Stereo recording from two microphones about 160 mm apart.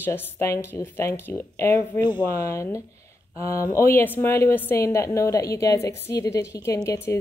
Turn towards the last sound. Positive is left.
turn(degrees=20)  # may be behind; listen again after turning